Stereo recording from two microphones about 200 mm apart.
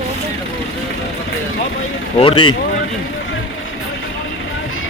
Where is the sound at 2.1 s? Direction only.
25° left (ahead or behind).